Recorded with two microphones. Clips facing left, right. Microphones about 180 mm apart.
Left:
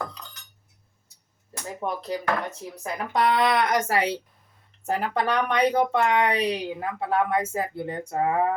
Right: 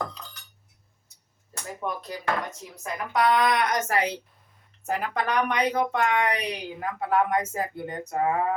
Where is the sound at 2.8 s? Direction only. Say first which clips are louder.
Even; 30° left (ahead or behind).